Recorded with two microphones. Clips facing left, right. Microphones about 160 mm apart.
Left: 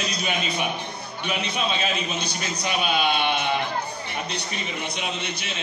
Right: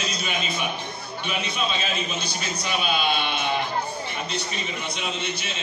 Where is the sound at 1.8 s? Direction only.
55° left (ahead or behind).